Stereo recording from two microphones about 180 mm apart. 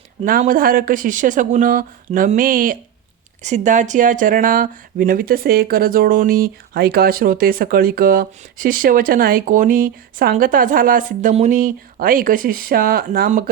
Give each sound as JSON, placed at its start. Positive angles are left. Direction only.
{"t": 0.3, "sound": "speech", "side_deg": -50}